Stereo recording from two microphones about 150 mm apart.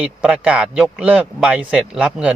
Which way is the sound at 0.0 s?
5° right (ahead or behind).